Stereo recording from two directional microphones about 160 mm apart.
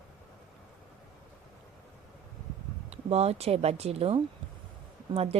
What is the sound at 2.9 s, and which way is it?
A woman's voice, 40° right (ahead or behind).